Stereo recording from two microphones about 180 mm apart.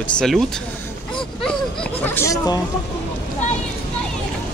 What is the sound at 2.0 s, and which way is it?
Speech, 15° left (ahead or behind).